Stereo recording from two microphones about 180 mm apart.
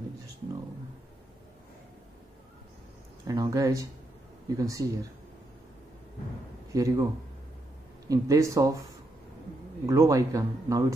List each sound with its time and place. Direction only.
3.3 s speech: 20° right (ahead or behind)
6.7 s speech: 20° right (ahead or behind)
8.1 s speech: 15° right (ahead or behind)
9.8 s speech: 15° right (ahead or behind)